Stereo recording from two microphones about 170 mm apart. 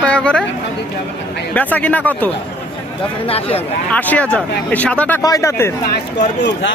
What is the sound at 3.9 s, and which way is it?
A man's voice, 10° left (ahead or behind).